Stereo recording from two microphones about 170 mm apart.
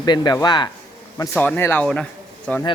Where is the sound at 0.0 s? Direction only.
25° left (ahead or behind).